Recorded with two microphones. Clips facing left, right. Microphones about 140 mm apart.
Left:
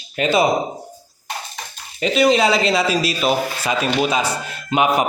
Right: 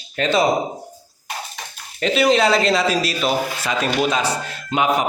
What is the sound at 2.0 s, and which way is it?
Speech, centre (ahead or behind).